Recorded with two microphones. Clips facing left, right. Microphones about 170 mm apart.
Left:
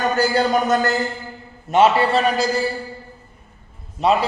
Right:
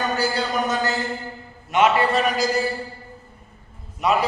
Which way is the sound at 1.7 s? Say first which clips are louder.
Left 3 dB; 30° left (ahead or behind).